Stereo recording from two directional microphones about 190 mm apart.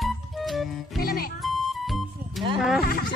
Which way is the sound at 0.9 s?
50° left (ahead or behind).